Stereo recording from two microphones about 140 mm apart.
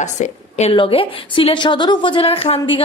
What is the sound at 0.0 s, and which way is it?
Speech, 55° left (ahead or behind).